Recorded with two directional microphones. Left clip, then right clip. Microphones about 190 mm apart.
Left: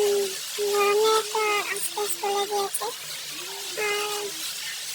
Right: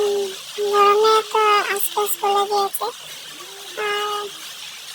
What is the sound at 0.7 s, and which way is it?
Speech, 30° right (ahead or behind).